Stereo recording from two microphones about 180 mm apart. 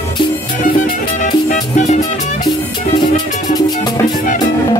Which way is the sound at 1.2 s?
40° left (ahead or behind).